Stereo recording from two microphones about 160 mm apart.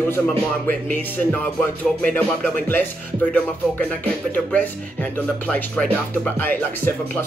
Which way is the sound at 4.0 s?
10° left (ahead or behind).